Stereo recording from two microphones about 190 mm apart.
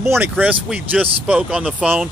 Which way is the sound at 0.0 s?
10° right (ahead or behind).